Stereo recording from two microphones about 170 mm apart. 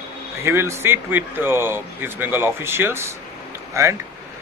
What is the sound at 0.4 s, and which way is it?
Speech, 15° right (ahead or behind).